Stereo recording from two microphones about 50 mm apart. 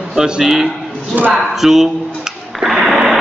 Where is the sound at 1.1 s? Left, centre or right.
Right.